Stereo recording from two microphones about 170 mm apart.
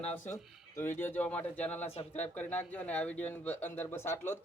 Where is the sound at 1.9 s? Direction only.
40° left (ahead or behind).